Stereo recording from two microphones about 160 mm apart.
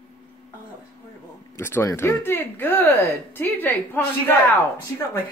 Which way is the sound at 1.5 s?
15° left (ahead or behind).